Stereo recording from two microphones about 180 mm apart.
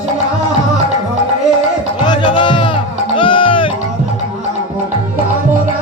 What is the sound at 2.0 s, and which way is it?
Music, 25° left (ahead or behind).